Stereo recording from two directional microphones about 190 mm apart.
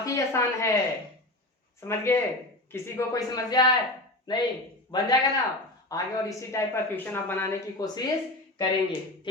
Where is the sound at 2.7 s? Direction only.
15° left (ahead or behind).